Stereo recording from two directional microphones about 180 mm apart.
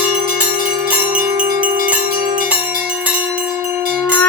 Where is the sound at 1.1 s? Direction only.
45° right (ahead or behind).